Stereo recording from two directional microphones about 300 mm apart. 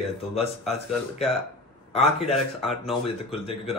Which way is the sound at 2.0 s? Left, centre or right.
Left.